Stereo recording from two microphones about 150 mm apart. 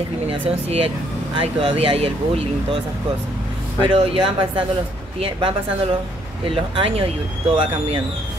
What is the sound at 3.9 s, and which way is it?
A woman's voice, 35° right (ahead or behind).